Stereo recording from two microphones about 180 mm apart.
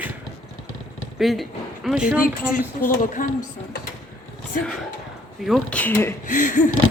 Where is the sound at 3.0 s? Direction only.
45° left (ahead or behind).